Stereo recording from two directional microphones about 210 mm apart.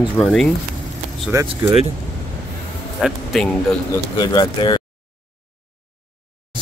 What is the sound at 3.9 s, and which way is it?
Speech, 20° left (ahead or behind).